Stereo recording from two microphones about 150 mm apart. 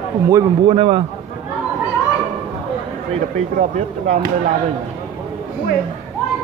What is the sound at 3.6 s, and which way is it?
Speech, 60° right (ahead or behind).